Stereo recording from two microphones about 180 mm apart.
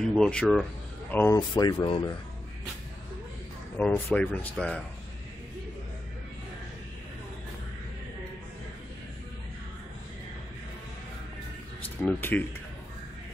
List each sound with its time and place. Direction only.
0.0 s speech: 5° left (ahead or behind)
1.5 s speech: 25° left (ahead or behind)
3.7 s speech: 5° left (ahead or behind)
12.0 s speech: 10° left (ahead or behind)